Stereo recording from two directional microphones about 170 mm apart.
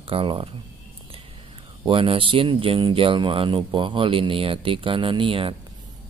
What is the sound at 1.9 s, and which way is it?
Speech, 30° right (ahead or behind).